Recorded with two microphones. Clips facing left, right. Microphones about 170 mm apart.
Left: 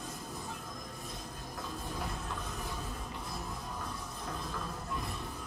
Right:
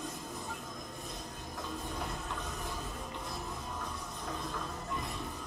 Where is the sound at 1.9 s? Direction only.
Centre (ahead or behind).